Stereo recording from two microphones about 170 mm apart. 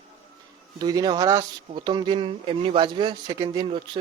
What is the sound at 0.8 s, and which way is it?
Speech, 25° right (ahead or behind).